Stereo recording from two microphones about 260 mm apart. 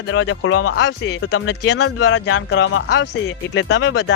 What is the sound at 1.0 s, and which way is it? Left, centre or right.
Speech, left.